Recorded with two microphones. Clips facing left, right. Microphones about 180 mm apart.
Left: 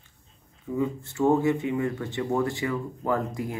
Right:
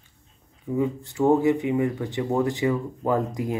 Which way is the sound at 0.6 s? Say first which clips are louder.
Right 3 dB; 15° right (ahead or behind).